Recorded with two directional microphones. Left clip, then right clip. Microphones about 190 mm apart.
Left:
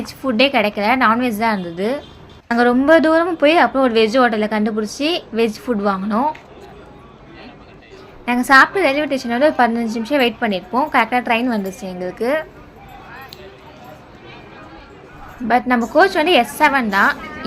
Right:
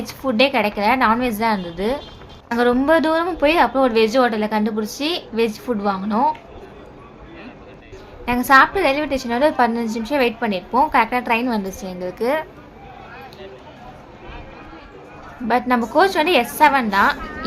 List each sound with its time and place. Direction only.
0.0 s a woman's voice: 10° left (ahead or behind)
8.2 s a woman's voice: 15° left (ahead or behind)
15.4 s a woman's voice: 10° left (ahead or behind)